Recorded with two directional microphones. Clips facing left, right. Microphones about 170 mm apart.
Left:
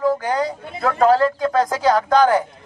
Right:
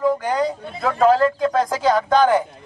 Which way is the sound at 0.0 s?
Centre (ahead or behind).